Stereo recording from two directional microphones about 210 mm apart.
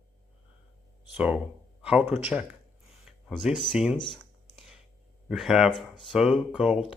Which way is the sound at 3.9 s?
20° left (ahead or behind).